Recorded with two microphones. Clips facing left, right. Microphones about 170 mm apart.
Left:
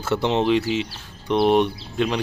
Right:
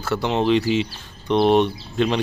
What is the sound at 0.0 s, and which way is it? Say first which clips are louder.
Speech: left 1 dB; 20° left (ahead or behind).